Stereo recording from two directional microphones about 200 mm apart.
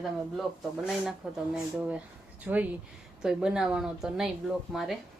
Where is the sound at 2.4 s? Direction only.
5° right (ahead or behind).